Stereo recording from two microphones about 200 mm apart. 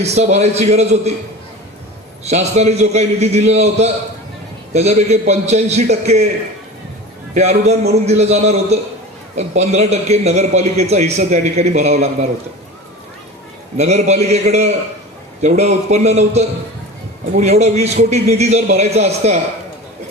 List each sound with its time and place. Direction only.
0.0 s a man's voice: 35° right (ahead or behind)
2.2 s a man's voice: 35° right (ahead or behind)
7.3 s a man's voice: 35° right (ahead or behind)
13.7 s a man's voice: 35° right (ahead or behind)